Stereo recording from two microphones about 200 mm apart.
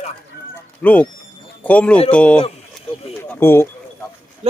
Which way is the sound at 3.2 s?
10° left (ahead or behind).